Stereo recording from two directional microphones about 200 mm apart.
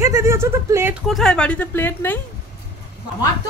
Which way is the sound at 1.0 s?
Centre (ahead or behind).